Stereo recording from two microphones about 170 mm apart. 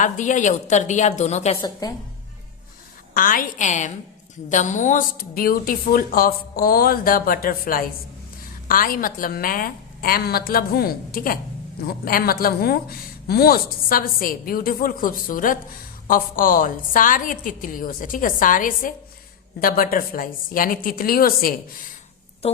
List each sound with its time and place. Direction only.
0.0 s a woman's voice: 45° left (ahead or behind)
1.8 s a woman's voice: 20° left (ahead or behind)
3.2 s a woman's voice: 55° left (ahead or behind)